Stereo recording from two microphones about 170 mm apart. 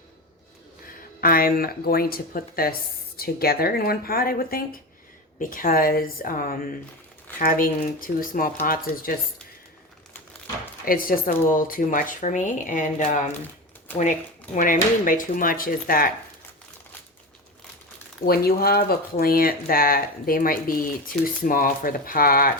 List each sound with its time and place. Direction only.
1.2 s speech: 60° left (ahead or behind)
10.8 s speech: 55° left (ahead or behind)
18.3 s speech: 60° left (ahead or behind)